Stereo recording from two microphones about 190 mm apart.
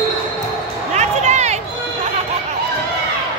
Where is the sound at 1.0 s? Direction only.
35° right (ahead or behind).